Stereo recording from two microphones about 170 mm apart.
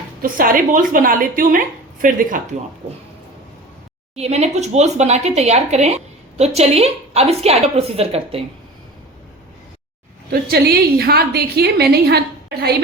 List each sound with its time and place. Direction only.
0.2 s speech: 55° right (ahead or behind)
4.1 s a woman's voice: 40° right (ahead or behind)
10.2 s a woman's voice: 65° right (ahead or behind)